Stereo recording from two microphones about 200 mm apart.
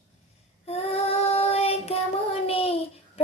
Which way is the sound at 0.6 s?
30° left (ahead or behind).